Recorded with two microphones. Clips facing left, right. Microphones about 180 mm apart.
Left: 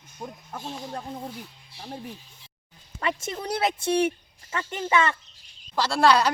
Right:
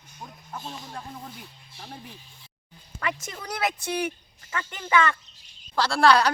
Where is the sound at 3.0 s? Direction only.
25° left (ahead or behind).